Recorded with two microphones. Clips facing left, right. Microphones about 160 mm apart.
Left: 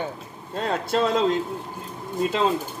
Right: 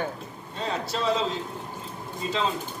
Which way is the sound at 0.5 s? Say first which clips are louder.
Left 6 dB; 50° left (ahead or behind).